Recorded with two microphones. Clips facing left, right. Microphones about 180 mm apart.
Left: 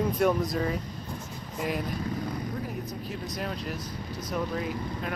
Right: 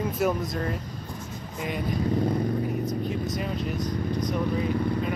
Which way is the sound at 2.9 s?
Centre (ahead or behind).